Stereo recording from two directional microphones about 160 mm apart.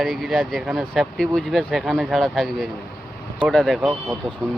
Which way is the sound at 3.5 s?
Centre (ahead or behind).